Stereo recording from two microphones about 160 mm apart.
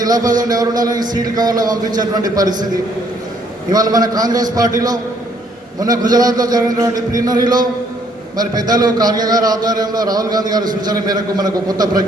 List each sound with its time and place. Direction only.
0.0 s a man's voice: 25° right (ahead or behind)
3.7 s a man's voice: 25° right (ahead or behind)